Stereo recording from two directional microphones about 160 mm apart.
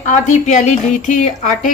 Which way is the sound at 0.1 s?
50° left (ahead or behind).